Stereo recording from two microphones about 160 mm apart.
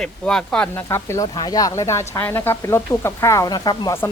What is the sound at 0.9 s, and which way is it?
Speech, 15° left (ahead or behind).